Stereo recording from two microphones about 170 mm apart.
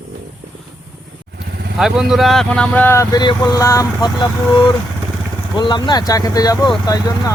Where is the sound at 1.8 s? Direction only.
5° right (ahead or behind).